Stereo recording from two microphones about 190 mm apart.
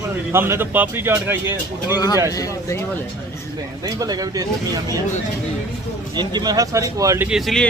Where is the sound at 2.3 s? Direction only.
20° left (ahead or behind).